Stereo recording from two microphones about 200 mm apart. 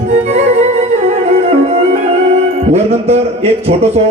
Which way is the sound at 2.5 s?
30° right (ahead or behind).